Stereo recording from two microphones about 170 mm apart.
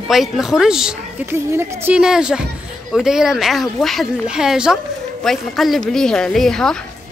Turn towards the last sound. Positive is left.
turn(degrees=5)  # may be behind; listen again after turning